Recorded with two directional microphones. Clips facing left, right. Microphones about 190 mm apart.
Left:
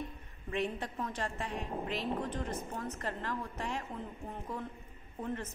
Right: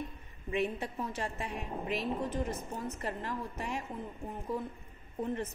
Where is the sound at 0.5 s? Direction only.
5° right (ahead or behind).